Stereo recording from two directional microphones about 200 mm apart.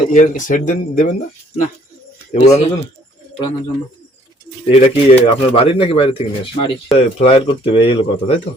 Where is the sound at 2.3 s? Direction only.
35° left (ahead or behind).